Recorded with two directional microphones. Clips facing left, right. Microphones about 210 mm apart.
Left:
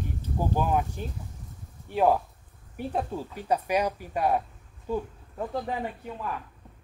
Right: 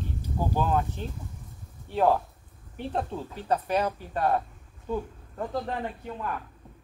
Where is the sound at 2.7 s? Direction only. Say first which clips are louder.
Left 1 dB; 10° left (ahead or behind).